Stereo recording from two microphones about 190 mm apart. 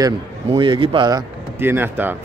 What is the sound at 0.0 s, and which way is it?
A man's voice, 20° right (ahead or behind).